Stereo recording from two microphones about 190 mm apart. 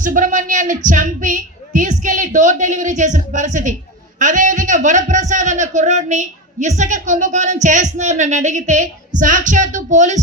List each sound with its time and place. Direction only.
0.0 s speech: 45° right (ahead or behind)